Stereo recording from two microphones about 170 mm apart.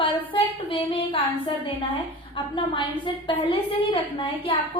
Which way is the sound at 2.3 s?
30° left (ahead or behind).